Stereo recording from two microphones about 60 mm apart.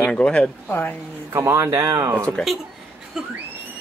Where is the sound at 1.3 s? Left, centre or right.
Right.